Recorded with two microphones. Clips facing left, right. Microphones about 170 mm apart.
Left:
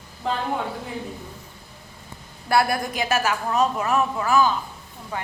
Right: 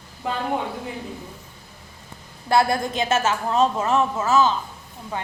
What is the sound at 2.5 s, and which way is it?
A woman's voice, 25° right (ahead or behind).